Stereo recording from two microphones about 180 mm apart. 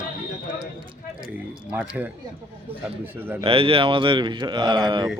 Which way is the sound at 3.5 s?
30° right (ahead or behind).